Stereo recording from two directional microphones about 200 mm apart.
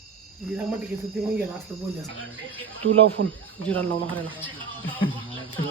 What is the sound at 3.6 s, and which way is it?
Speech, 10° left (ahead or behind).